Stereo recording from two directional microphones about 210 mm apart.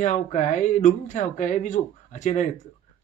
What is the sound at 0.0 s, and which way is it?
Speech, 35° left (ahead or behind).